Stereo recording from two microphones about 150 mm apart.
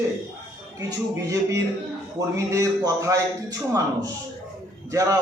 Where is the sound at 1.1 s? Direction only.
20° right (ahead or behind).